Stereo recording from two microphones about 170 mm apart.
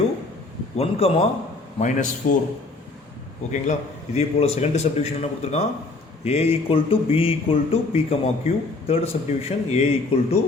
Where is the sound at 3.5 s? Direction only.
45° left (ahead or behind).